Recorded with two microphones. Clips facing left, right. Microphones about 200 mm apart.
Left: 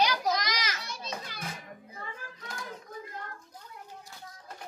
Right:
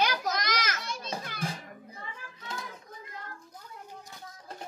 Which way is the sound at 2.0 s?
40° left (ahead or behind).